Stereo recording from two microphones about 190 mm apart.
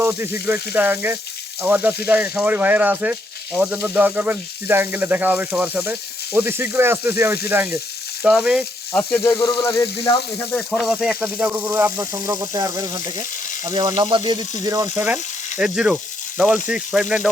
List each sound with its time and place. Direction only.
0.0 s speech: 15° right (ahead or behind); by 9.2 s 5° left (ahead or behind)
9.2 s sizzle: 20° left (ahead or behind)
10.5 s speech: centre (ahead or behind)